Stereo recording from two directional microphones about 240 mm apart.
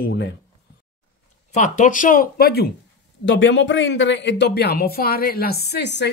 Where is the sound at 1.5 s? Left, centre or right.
Left.